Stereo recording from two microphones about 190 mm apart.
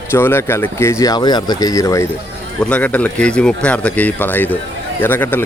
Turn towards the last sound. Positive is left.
turn(degrees=10)  # may be behind; listen again after turning